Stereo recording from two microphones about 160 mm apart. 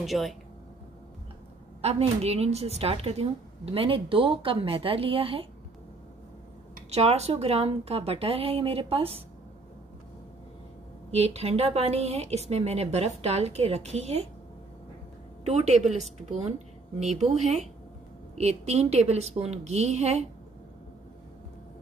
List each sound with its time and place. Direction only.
0.0 s speech: centre (ahead or behind)
1.8 s a woman's voice: 40° right (ahead or behind)
6.9 s a woman's voice: 40° right (ahead or behind)
11.1 s a woman's voice: 40° right (ahead or behind)
15.4 s a woman's voice: 45° right (ahead or behind)
18.4 s a woman's voice: 40° right (ahead or behind)